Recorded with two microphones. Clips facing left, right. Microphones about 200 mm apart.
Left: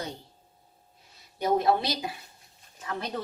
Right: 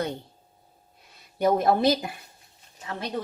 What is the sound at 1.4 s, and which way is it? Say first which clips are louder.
Speech: right 3 dB; 50° right (ahead or behind).